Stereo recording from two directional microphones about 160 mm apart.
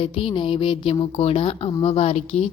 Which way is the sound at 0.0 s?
35° left (ahead or behind).